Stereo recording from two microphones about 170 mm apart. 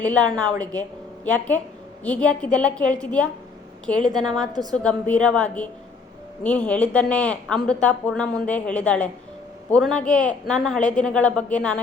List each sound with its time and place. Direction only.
0.0 s a woman's voice: 10° left (ahead or behind)
4.3 s a woman's voice: 25° right (ahead or behind)
4.7 s a woman's voice: 5° left (ahead or behind)